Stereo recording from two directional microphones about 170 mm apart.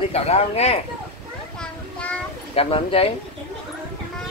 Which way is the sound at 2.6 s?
35° left (ahead or behind).